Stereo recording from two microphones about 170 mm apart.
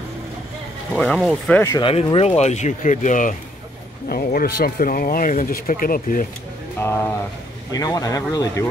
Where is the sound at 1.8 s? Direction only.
35° left (ahead or behind); by 6.2 s 55° left (ahead or behind).